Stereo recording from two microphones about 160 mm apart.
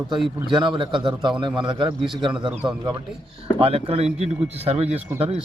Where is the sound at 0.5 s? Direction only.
30° right (ahead or behind).